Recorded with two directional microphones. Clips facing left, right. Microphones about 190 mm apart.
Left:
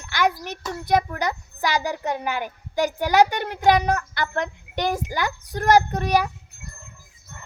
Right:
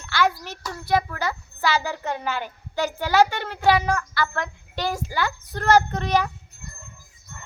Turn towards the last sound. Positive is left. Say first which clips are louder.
# left 1 dB
turn(degrees=10)  # may be behind; listen again after turning